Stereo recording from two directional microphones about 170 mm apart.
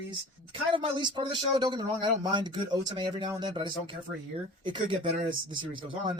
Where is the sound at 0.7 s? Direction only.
30° right (ahead or behind).